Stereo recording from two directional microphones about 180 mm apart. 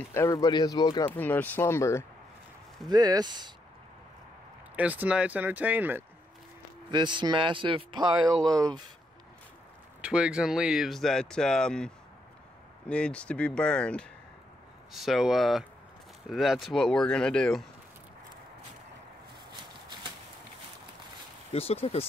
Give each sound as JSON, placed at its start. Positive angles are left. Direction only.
{"t": 0.1, "sound": "speech", "side_deg": 15}
{"t": 1.1, "sound": "speech", "side_deg": 10}
{"t": 2.9, "sound": "speech", "side_deg": -20}
{"t": 4.7, "sound": "speech", "side_deg": -10}
{"t": 6.9, "sound": "speech", "side_deg": -25}
{"t": 10.0, "sound": "speech", "side_deg": -5}
{"t": 21.5, "sound": "speech", "side_deg": 35}